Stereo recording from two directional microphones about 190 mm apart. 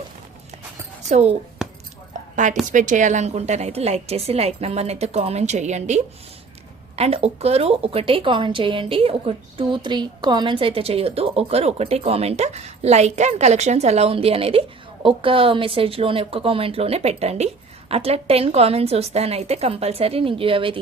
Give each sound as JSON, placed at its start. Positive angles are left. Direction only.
{"t": 1.0, "sound": "a woman's voice", "side_deg": -35}